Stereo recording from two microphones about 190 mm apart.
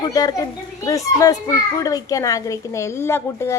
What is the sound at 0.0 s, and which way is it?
A child's voice, 20° left (ahead or behind).